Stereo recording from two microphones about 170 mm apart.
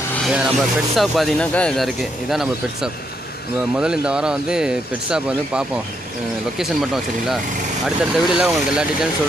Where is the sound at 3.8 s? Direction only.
5° right (ahead or behind).